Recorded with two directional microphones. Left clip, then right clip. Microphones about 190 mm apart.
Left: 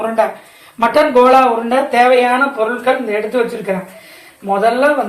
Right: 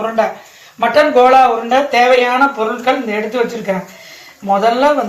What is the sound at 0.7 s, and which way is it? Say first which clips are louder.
Speech: even; 25° left (ahead or behind).